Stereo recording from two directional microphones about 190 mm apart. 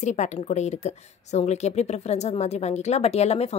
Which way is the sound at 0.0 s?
40° left (ahead or behind).